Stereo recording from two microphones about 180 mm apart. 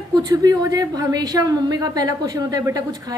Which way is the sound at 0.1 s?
20° right (ahead or behind).